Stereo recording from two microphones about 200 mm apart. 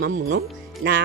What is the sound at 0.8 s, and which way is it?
Music, 65° right (ahead or behind).